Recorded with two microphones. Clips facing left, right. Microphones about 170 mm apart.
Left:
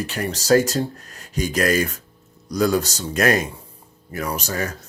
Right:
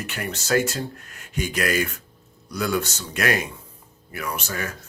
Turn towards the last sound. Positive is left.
turn(degrees=35)  # may be behind; listen again after turning